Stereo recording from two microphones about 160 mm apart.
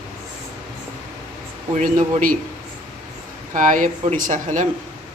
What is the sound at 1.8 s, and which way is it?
Speech, 55° right (ahead or behind).